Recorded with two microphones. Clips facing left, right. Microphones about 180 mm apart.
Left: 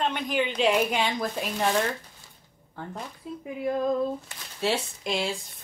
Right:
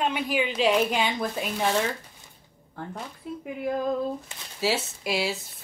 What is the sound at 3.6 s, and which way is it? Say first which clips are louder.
Speech: left 2 dB; centre (ahead or behind).